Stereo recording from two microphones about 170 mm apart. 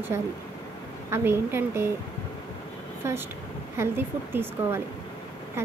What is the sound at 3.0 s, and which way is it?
Speech, 15° right (ahead or behind).